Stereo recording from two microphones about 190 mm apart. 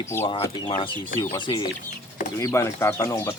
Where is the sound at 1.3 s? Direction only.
25° left (ahead or behind).